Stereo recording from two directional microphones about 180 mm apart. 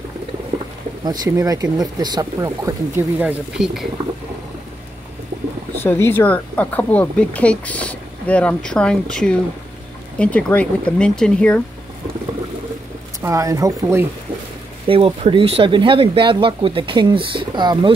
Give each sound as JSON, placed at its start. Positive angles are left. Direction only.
{"t": 1.0, "sound": "speech", "side_deg": -20}
{"t": 5.8, "sound": "speech", "side_deg": 10}
{"t": 13.2, "sound": "speech", "side_deg": -15}
{"t": 14.9, "sound": "speech", "side_deg": -30}